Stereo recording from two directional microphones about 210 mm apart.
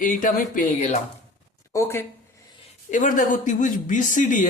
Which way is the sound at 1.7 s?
15° left (ahead or behind).